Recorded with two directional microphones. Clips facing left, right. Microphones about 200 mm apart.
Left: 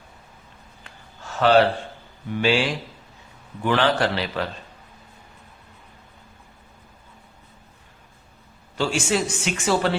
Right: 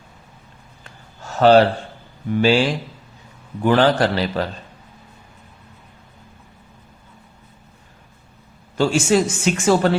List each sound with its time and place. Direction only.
0.9 s a sound: 40° right (ahead or behind)
2.4 s a man's voice: 40° right (ahead or behind)
8.8 s speech: 45° right (ahead or behind)